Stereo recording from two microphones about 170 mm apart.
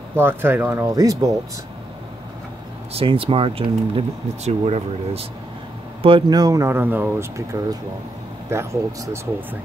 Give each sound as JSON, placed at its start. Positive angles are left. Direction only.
{"t": 0.1, "sound": "speech", "side_deg": -15}
{"t": 2.9, "sound": "speech", "side_deg": -35}
{"t": 6.0, "sound": "speech", "side_deg": -25}
{"t": 8.5, "sound": "speech", "side_deg": -15}